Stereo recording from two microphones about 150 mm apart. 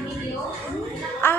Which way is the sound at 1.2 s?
15° left (ahead or behind).